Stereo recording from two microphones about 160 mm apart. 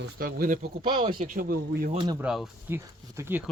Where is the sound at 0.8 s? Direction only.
30° right (ahead or behind).